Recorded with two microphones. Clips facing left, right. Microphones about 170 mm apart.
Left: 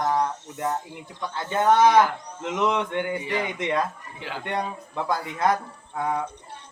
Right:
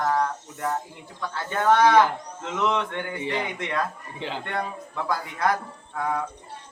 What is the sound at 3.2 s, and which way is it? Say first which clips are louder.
Speech: even; 25° right (ahead or behind).